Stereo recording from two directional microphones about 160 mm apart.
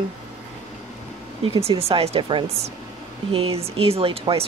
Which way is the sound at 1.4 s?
35° right (ahead or behind).